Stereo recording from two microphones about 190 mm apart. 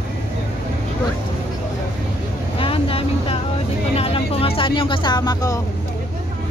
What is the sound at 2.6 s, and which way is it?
Vehicle, 30° left (ahead or behind).